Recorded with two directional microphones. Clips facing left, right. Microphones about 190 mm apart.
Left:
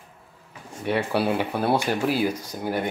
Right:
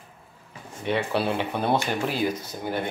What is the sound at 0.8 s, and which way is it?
Speech, 10° left (ahead or behind).